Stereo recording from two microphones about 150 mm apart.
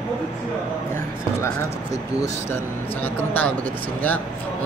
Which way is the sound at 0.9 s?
20° left (ahead or behind).